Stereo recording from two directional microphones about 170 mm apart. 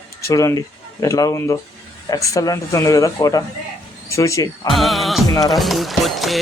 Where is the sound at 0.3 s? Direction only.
20° left (ahead or behind).